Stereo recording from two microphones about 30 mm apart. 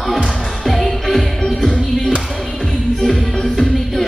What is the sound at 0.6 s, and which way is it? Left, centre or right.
Music, centre.